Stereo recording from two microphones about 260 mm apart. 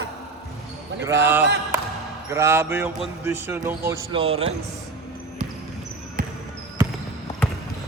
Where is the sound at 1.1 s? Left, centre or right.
Centre.